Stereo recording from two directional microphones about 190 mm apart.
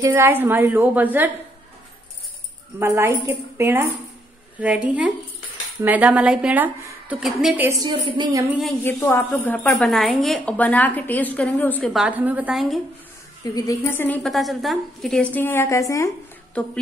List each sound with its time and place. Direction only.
0.0 s a woman's voice: 15° right (ahead or behind)
2.8 s a woman's voice: 10° right (ahead or behind)
7.6 s a woman's voice: 20° right (ahead or behind)
8.8 s a woman's voice: 10° left (ahead or behind)
13.4 s a woman's voice: 20° left (ahead or behind)